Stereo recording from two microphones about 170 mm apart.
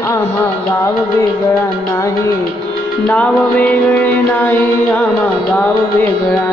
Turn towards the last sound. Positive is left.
turn(degrees=10)  # may be behind; listen again after turning